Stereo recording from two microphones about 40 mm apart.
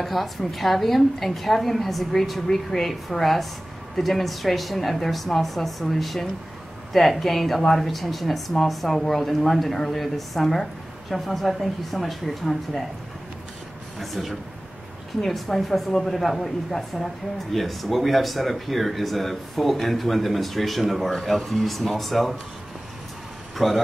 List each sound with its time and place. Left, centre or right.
0.0 s speech: centre
13.9 s speech: centre
23.5 s speech: centre